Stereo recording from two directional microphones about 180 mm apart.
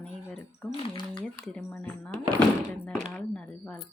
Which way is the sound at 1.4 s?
5° left (ahead or behind).